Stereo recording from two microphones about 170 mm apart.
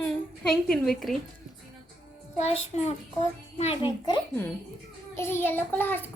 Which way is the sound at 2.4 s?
40° left (ahead or behind).